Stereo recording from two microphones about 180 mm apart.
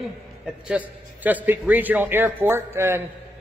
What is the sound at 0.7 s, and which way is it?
A man's voice, 10° right (ahead or behind).